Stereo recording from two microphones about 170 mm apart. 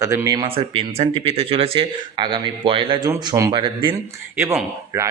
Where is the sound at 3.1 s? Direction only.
20° right (ahead or behind).